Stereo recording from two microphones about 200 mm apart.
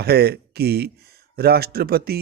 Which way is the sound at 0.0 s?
50° right (ahead or behind).